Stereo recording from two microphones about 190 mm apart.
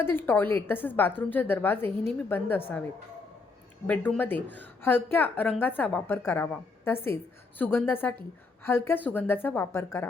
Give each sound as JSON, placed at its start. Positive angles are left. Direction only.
{"t": 0.0, "sound": "a woman's voice", "side_deg": 10}